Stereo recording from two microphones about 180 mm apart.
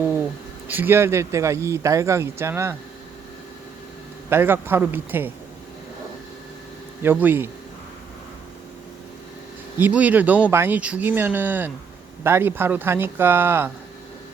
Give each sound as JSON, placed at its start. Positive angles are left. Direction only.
{"t": 0.7, "sound": "speech", "side_deg": -10}
{"t": 4.3, "sound": "speech", "side_deg": -15}
{"t": 7.0, "sound": "speech", "side_deg": -10}
{"t": 9.7, "sound": "speech", "side_deg": -10}